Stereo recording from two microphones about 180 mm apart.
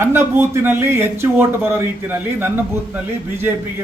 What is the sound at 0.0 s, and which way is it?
A man's voice, 15° right (ahead or behind).